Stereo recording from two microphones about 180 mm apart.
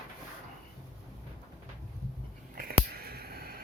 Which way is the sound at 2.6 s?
55° right (ahead or behind).